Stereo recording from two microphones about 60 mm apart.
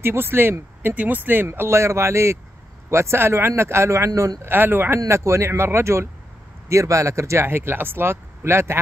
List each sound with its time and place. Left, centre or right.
0.0 s speech: right
4.1 s speech: right
4.4 s speech: right
6.7 s speech: right